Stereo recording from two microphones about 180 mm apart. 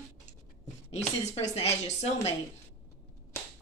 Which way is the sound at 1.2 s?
35° left (ahead or behind).